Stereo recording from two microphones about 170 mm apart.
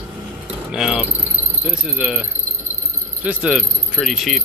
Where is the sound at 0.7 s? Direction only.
5° right (ahead or behind).